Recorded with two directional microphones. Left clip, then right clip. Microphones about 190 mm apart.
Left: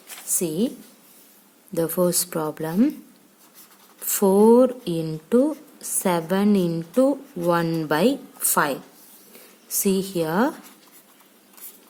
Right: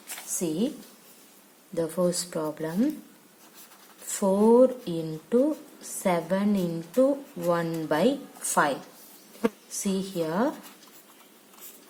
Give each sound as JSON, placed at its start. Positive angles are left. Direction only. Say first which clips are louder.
{"t": 0.3, "sound": "a woman's voice", "louder": "left 4 dB", "side_deg": 50}
{"t": 1.7, "sound": "speech", "louder": "left 4 dB", "side_deg": 60}
{"t": 4.0, "sound": "speech", "louder": "left 6 dB", "side_deg": 60}